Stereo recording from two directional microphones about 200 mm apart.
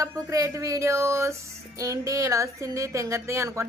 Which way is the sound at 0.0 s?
15° right (ahead or behind).